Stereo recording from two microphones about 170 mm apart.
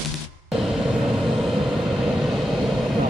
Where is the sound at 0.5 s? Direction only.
Centre (ahead or behind).